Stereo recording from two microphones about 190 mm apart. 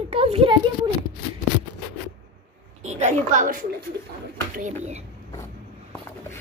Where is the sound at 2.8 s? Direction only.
35° right (ahead or behind).